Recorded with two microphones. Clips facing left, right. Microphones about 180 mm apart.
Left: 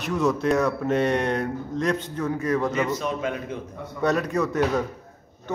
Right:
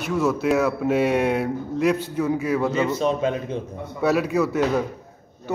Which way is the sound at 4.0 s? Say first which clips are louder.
Right 3 dB; 5° right (ahead or behind).